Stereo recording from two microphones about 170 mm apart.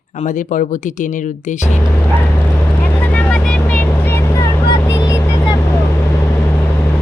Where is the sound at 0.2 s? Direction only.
50° left (ahead or behind).